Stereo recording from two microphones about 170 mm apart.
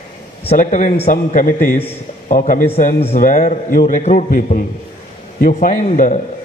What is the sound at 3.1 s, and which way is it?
A man's voice, 50° left (ahead or behind).